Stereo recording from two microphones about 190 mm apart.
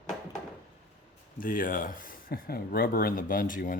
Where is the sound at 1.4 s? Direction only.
45° left (ahead or behind).